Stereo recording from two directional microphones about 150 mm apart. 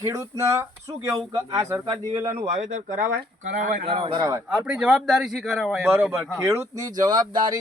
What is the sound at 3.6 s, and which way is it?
Speech, 55° right (ahead or behind).